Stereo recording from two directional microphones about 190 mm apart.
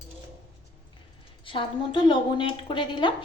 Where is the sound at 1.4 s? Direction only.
25° left (ahead or behind).